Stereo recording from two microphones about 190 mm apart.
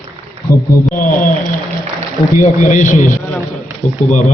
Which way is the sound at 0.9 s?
45° left (ahead or behind).